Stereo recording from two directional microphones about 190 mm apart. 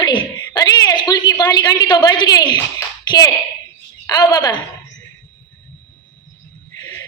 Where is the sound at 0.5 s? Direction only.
20° left (ahead or behind).